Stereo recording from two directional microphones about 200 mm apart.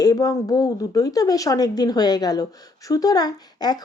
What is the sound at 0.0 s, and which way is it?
A woman's voice, 20° left (ahead or behind).